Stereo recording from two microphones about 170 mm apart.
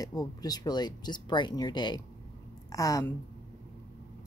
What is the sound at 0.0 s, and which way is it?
Speech, 20° left (ahead or behind).